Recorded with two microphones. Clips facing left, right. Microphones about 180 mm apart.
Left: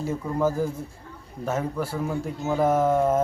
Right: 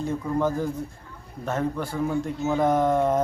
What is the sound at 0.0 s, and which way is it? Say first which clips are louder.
Speech: even; 5° left (ahead or behind).